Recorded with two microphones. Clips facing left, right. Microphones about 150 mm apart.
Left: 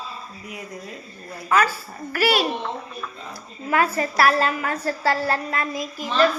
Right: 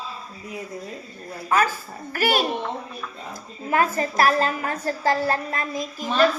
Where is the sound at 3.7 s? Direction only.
40° right (ahead or behind).